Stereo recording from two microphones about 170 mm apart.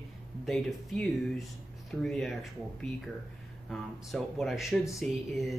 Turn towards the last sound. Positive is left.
turn(degrees=0)  # may be behind; listen again after turning